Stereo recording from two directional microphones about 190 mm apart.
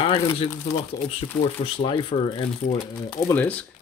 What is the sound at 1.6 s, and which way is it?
Speech, 30° left (ahead or behind).